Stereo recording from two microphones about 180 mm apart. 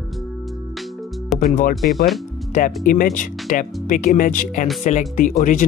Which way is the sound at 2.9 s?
50° left (ahead or behind).